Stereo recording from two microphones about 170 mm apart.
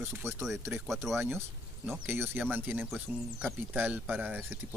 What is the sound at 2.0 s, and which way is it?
Speech, 15° right (ahead or behind).